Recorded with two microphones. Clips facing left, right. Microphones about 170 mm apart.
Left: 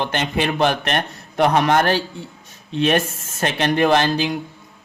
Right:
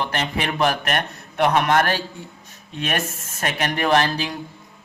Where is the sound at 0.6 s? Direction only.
25° left (ahead or behind).